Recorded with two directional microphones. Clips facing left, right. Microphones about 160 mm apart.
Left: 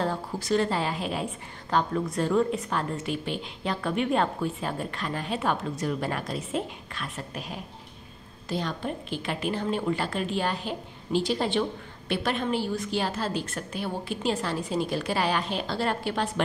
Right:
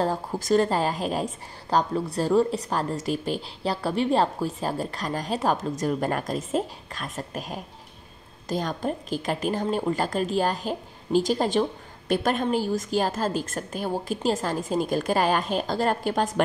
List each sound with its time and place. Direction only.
0.0 s a woman's voice: 40° right (ahead or behind)